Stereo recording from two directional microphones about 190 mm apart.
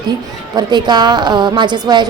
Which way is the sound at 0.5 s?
20° right (ahead or behind).